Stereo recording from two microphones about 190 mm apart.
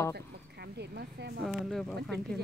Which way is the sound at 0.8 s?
60° right (ahead or behind).